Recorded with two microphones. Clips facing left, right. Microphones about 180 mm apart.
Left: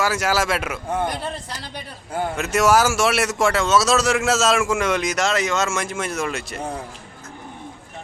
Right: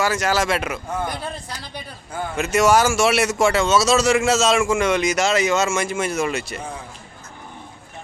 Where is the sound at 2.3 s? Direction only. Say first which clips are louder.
Right 1 dB; centre (ahead or behind).